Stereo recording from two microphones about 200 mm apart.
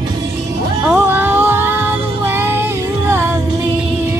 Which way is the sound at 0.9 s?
10° right (ahead or behind).